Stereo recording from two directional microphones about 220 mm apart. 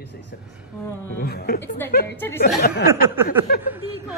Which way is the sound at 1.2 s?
45° left (ahead or behind).